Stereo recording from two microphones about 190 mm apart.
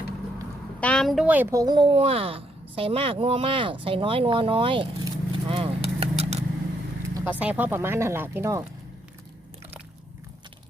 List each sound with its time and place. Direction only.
0.8 s speech: 5° left (ahead or behind); by 6.4 s 30° right (ahead or behind)
7.1 s speech: 10° right (ahead or behind)